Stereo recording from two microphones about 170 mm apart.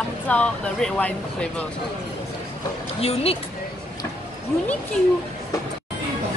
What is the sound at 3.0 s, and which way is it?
Speech, 35° left (ahead or behind).